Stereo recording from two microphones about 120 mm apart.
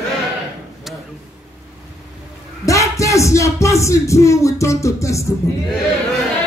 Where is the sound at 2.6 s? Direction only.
25° left (ahead or behind).